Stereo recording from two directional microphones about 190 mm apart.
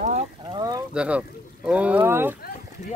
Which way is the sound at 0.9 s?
5° right (ahead or behind).